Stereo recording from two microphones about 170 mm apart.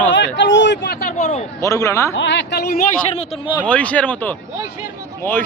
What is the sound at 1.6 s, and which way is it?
Speech, 20° left (ahead or behind).